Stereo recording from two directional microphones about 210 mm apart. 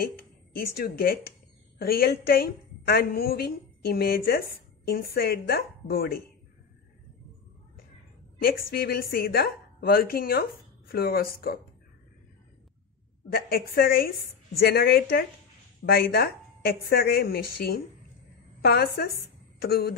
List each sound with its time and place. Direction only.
0.6 s a woman's voice: 45° left (ahead or behind)
8.4 s a woman's voice: 45° left (ahead or behind)
13.3 s a woman's voice: 45° left (ahead or behind)